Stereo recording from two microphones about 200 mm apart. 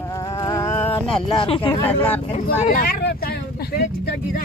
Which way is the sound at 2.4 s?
45° left (ahead or behind).